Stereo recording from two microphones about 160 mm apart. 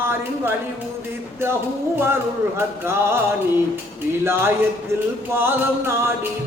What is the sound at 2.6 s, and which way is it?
Music, 15° right (ahead or behind).